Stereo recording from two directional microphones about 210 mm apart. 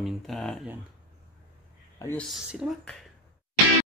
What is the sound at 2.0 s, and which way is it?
Speech, 10° left (ahead or behind).